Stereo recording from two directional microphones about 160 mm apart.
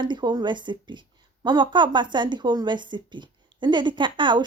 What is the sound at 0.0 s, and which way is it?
A woman's voice, 30° right (ahead or behind).